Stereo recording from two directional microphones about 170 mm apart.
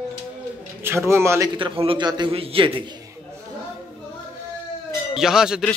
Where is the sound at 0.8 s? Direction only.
15° right (ahead or behind).